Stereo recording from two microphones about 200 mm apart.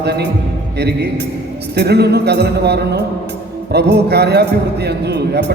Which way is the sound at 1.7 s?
55° right (ahead or behind).